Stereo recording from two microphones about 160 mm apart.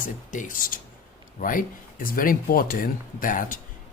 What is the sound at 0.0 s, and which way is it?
Speech, 55° left (ahead or behind).